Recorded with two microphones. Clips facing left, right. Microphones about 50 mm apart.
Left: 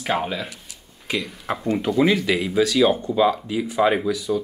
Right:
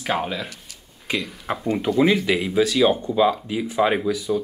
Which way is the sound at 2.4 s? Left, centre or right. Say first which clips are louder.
Even; centre.